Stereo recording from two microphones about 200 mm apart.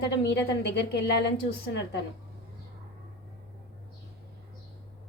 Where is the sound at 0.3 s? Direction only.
60° left (ahead or behind).